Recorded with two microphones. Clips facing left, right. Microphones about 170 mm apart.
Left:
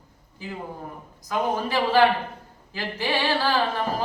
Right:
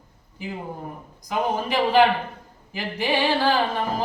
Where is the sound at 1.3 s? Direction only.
15° right (ahead or behind).